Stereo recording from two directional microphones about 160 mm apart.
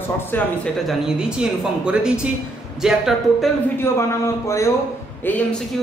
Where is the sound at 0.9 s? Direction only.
5° right (ahead or behind).